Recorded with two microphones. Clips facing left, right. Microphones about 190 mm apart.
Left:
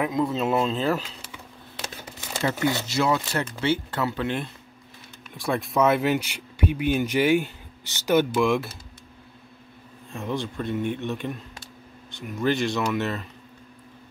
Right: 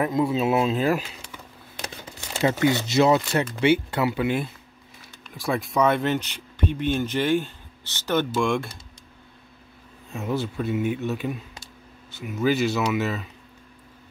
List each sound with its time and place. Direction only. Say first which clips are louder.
0.0 s speech: right 2 dB; 5° right (ahead or behind)
2.1 s a sound: right 4 dB; 10° right (ahead or behind)
2.6 s speech: right 5 dB; 20° right (ahead or behind); by 8.7 s 5° left (ahead or behind)
10.1 s speech: right 2 dB; 5° right (ahead or behind)